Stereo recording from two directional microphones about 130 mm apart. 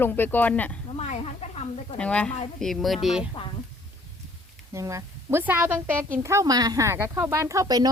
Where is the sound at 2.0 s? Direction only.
10° left (ahead or behind).